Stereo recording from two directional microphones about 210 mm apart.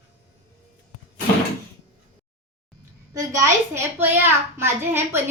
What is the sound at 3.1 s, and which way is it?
A child's voice, 15° right (ahead or behind).